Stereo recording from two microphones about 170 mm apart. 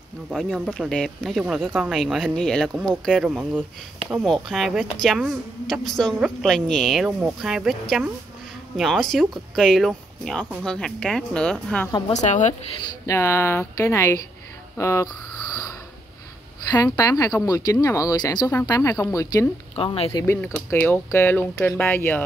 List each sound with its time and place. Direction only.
0.3 s speech: centre (ahead or behind)
8.7 s speech: centre (ahead or behind)
12.1 s a woman's voice: 45° left (ahead or behind)
13.0 s speech: 15° left (ahead or behind)
16.7 s speech: 25° left (ahead or behind)
19.7 s speech: 35° left (ahead or behind)
20.1 s speech: 20° left (ahead or behind)